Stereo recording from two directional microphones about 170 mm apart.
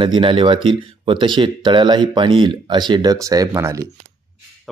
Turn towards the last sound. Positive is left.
turn(degrees=-20)  # may be behind; listen again after turning